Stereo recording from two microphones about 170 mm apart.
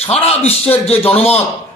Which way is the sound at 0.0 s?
35° left (ahead or behind).